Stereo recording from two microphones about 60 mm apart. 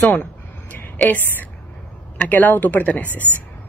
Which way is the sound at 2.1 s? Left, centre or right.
Left.